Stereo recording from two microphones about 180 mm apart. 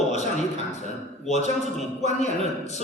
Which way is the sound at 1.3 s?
40° left (ahead or behind).